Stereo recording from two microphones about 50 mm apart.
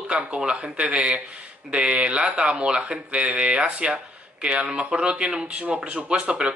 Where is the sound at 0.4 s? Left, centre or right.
Right.